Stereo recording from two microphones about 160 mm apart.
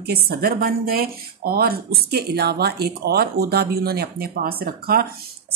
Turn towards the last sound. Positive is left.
turn(degrees=-70)  # may be behind; listen again after turning